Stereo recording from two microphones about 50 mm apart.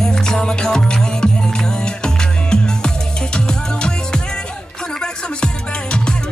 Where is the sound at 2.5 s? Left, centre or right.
Centre.